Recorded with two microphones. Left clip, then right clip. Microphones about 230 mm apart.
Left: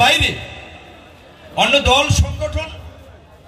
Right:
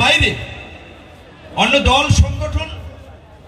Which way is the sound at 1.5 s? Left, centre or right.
Left.